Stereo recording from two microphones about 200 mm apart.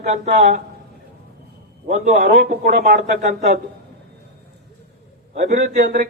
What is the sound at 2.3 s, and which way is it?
Speech, 50° right (ahead or behind).